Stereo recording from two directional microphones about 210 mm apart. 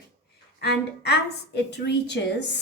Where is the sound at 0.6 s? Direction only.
50° left (ahead or behind).